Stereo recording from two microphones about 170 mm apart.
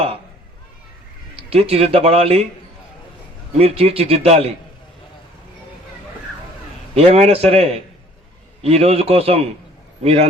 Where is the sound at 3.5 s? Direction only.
35° right (ahead or behind).